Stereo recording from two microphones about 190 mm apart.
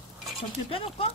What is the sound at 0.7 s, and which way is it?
Speech, 30° left (ahead or behind).